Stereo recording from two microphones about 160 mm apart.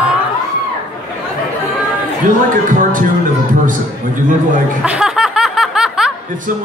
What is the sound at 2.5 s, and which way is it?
Speech, 60° right (ahead or behind).